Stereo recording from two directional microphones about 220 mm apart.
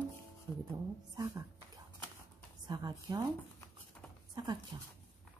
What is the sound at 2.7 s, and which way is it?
Speech, 20° right (ahead or behind).